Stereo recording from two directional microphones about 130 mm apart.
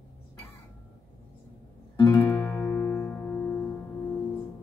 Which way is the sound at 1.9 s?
25° left (ahead or behind).